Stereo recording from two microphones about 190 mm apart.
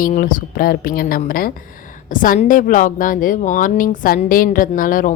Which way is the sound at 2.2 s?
45° left (ahead or behind).